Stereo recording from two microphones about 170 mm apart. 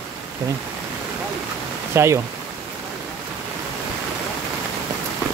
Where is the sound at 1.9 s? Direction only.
15° right (ahead or behind).